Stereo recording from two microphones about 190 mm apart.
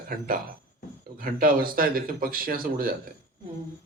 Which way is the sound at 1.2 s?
50° right (ahead or behind).